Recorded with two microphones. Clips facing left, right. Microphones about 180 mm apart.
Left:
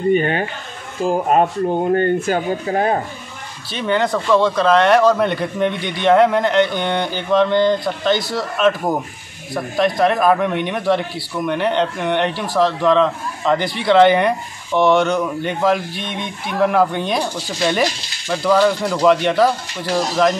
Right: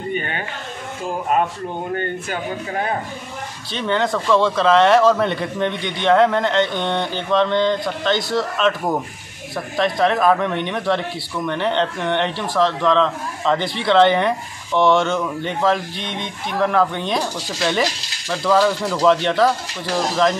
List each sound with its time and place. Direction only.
0.1 s speech: 40° left (ahead or behind)
3.7 s speech: 5° left (ahead or behind)